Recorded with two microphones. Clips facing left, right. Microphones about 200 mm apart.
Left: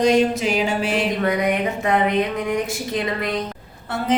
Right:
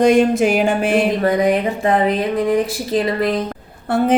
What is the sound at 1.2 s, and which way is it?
Speech, 35° right (ahead or behind).